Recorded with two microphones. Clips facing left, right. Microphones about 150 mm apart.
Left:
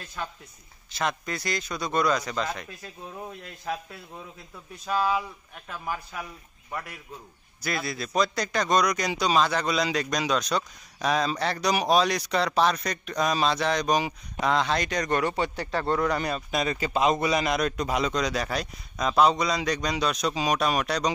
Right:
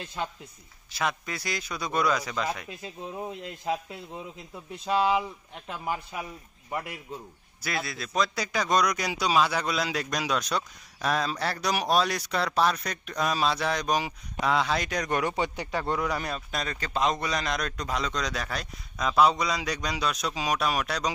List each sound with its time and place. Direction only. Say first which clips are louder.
0.0 s a man's voice: right 2 dB; 25° right (ahead or behind)
0.9 s a man's voice: left 1 dB; 5° right (ahead or behind)
2.8 s a man's voice: right 3 dB; 20° right (ahead or behind)
7.6 s a man's voice: left 2 dB; centre (ahead or behind)